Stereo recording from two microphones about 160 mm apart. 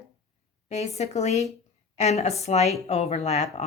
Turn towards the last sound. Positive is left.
turn(degrees=45)  # may be behind; listen again after turning